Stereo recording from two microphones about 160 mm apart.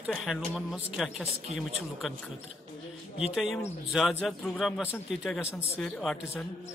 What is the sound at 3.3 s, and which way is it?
A man's voice, centre (ahead or behind).